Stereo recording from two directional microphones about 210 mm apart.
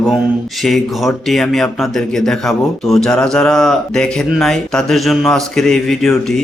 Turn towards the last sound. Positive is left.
turn(degrees=0)  # may be behind; listen again after turning